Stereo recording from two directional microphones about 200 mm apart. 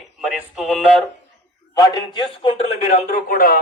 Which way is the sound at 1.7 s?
20° left (ahead or behind).